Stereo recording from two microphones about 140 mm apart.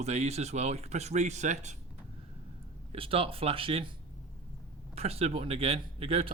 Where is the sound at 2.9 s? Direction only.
40° right (ahead or behind).